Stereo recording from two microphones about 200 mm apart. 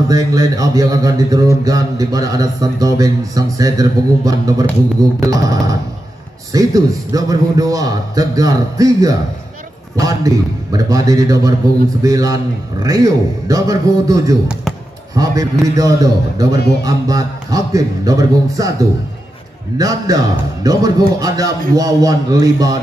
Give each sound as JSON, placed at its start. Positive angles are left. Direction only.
{"t": 0.1, "sound": "speech", "side_deg": -15}